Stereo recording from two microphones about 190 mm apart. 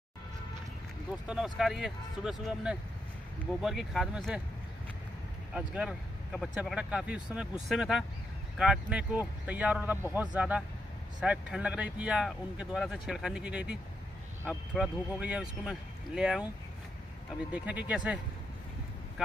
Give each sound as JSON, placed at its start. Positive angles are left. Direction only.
{"t": 1.2, "sound": "speech", "side_deg": -5}
{"t": 5.5, "sound": "a man's voice", "side_deg": -5}
{"t": 17.5, "sound": "a man's voice", "side_deg": -5}